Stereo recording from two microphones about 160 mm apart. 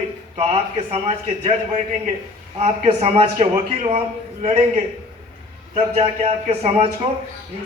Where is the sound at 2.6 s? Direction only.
40° right (ahead or behind).